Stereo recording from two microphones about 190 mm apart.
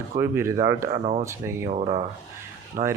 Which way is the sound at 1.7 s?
35° right (ahead or behind).